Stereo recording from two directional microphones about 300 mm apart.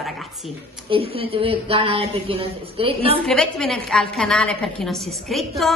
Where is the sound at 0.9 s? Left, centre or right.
Centre.